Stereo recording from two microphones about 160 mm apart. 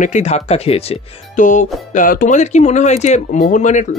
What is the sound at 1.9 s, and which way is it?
Speech, 55° left (ahead or behind).